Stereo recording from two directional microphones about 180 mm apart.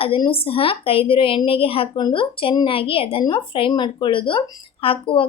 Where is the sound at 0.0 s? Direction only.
30° left (ahead or behind).